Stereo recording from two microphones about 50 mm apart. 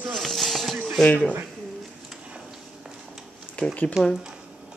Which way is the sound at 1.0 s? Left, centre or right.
Left.